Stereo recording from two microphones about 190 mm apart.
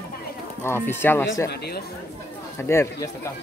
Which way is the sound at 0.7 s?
10° left (ahead or behind).